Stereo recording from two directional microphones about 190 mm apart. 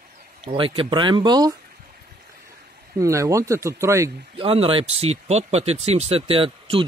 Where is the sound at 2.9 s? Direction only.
15° right (ahead or behind).